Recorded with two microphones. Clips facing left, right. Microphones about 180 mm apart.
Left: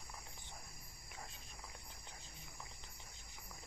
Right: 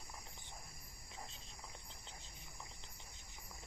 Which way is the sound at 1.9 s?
20° right (ahead or behind).